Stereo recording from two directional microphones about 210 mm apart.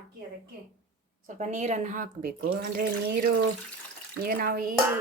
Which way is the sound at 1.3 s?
35° right (ahead or behind).